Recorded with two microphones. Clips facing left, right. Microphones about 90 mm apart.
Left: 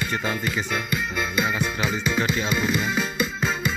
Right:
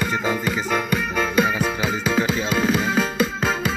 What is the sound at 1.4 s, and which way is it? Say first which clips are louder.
Music: right 1 dB; 40° right (ahead or behind).